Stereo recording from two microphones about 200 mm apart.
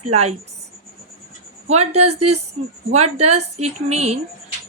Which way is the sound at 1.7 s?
30° right (ahead or behind).